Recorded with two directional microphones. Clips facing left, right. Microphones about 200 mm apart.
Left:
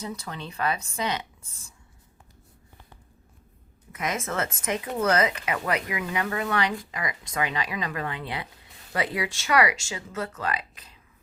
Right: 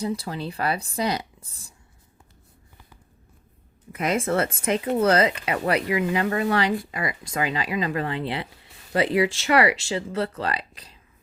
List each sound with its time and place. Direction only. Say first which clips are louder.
0.0 s speech: right 7 dB; 35° right (ahead or behind)
3.9 s speech: right 6 dB; 30° right (ahead or behind)